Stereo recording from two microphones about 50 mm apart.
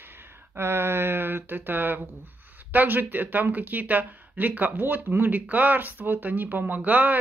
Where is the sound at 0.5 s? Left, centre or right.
Right.